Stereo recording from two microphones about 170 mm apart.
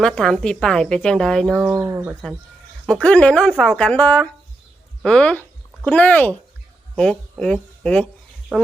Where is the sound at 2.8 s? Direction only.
5° left (ahead or behind).